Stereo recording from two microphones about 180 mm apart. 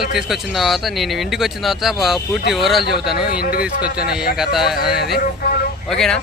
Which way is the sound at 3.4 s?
55° left (ahead or behind).